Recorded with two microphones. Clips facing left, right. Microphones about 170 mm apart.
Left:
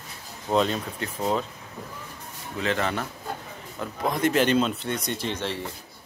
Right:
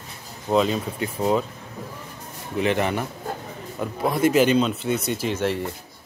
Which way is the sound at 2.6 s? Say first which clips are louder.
Right 4 dB; 15° right (ahead or behind).